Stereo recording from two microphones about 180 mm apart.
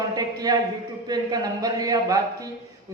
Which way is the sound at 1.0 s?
20° right (ahead or behind).